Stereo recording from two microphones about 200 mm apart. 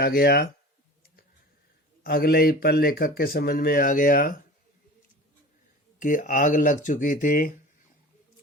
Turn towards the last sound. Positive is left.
turn(degrees=45)  # may be behind; listen again after turning